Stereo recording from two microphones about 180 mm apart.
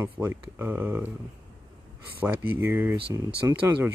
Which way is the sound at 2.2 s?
10° right (ahead or behind).